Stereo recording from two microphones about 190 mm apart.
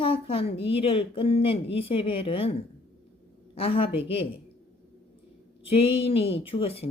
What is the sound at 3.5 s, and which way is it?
Speech, 30° left (ahead or behind).